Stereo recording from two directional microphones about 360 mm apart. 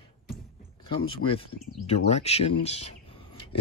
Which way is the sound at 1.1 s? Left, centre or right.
Centre.